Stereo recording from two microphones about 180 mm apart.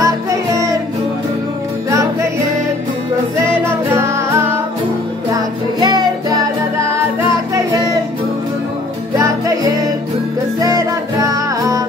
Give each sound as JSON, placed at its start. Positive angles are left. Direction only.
{"t": 0.0, "sound": "music", "side_deg": -15}
{"t": 5.3, "sound": "music", "side_deg": -20}
{"t": 10.6, "sound": "music", "side_deg": -20}